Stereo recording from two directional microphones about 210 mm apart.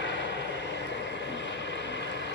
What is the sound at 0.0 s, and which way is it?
Vehicle, 55° left (ahead or behind).